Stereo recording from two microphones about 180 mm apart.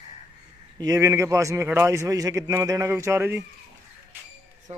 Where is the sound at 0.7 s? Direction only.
20° right (ahead or behind).